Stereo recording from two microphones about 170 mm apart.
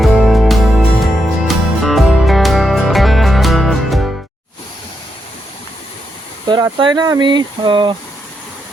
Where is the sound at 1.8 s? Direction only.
Centre (ahead or behind).